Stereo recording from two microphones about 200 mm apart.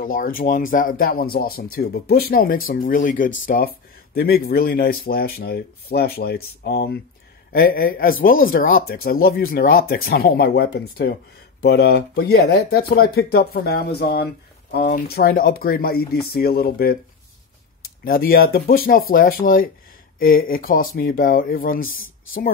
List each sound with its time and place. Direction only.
0.0 s speech: 45° left (ahead or behind)
18.0 s speech: 45° left (ahead or behind)